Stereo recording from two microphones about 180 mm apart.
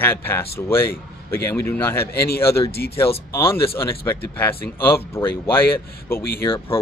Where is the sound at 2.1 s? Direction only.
60° left (ahead or behind).